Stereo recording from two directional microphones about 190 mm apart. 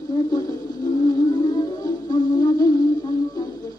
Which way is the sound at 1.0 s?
20° left (ahead or behind).